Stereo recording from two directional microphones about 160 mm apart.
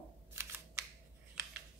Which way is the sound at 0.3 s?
15° right (ahead or behind).